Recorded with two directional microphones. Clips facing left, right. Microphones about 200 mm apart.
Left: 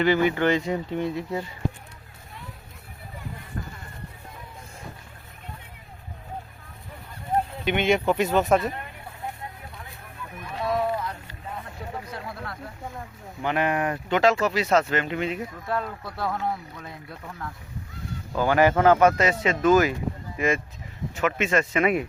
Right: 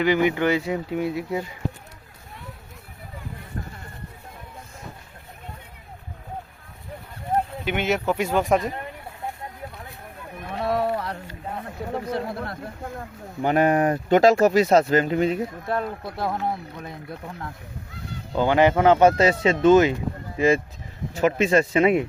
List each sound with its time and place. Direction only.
0.0 s speech: 15° right (ahead or behind)
7.6 s speech: 5° right (ahead or behind)
10.4 s run: 55° right (ahead or behind)
12.2 s a sound: 45° right (ahead or behind)
13.4 s speech: 40° right (ahead or behind)
15.7 s speech: 20° right (ahead or behind)
18.3 s speech: 20° right (ahead or behind)